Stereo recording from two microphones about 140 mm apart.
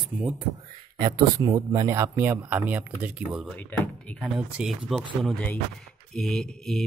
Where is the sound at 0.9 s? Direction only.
30° right (ahead or behind); by 3.5 s 10° right (ahead or behind).